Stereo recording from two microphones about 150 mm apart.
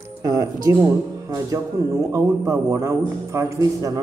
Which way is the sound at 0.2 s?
25° right (ahead or behind).